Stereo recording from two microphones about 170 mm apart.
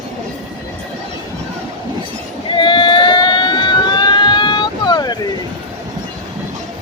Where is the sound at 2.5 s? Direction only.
30° left (ahead or behind).